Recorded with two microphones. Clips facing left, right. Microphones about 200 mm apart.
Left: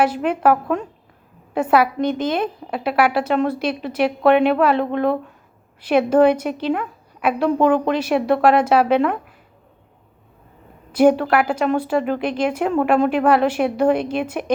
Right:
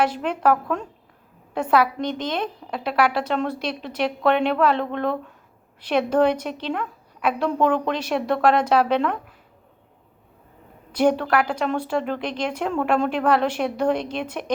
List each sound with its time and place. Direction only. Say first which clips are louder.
0.0 s a woman's voice: left 4 dB; 5° left (ahead or behind)
10.9 s a woman's voice: left 5 dB; 5° left (ahead or behind)